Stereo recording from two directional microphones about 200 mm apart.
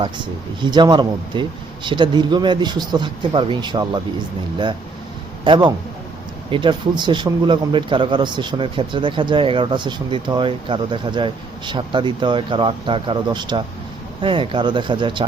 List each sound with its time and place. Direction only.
0.0 s speech: 25° right (ahead or behind)
5.5 s speech: 25° right (ahead or behind)